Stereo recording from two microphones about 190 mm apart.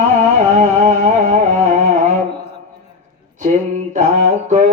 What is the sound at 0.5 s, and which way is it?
Music, 40° right (ahead or behind).